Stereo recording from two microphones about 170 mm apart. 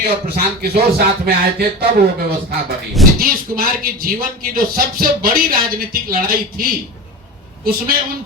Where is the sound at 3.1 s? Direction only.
60° right (ahead or behind).